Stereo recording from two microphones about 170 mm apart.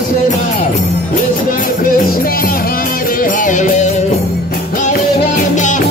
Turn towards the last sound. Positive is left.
turn(degrees=45)  # may be behind; listen again after turning